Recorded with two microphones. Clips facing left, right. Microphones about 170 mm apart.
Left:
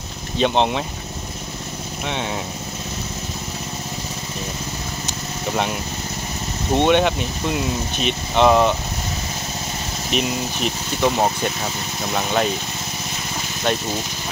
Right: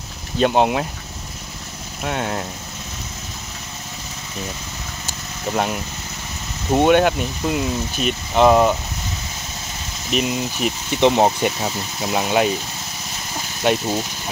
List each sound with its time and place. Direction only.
0.4 s speech: 5° right (ahead or behind)
2.0 s speech: centre (ahead or behind)
6.7 s speech: 5° right (ahead or behind)
10.1 s speech: centre (ahead or behind)
11.0 s speech: 20° right (ahead or behind)
12.1 s speech: 10° right (ahead or behind)
13.7 s speech: 10° right (ahead or behind)